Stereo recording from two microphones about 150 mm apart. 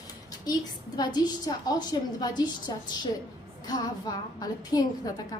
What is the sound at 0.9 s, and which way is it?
A woman's voice, 25° left (ahead or behind).